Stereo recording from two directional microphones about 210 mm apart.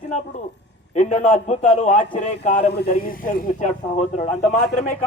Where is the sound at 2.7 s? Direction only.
45° left (ahead or behind).